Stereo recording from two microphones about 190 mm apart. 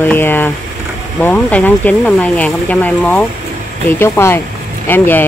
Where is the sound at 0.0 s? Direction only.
10° left (ahead or behind).